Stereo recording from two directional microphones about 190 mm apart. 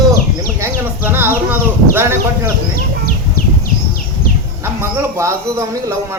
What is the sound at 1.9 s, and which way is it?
Speech, 15° right (ahead or behind).